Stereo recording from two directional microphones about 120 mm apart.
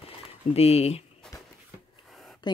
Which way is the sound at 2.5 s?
35° left (ahead or behind).